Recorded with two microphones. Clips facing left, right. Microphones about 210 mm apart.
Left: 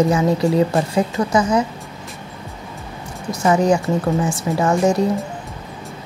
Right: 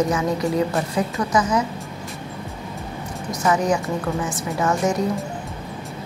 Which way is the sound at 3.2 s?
30° left (ahead or behind).